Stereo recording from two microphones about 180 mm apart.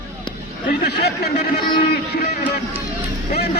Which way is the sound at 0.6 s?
60° left (ahead or behind).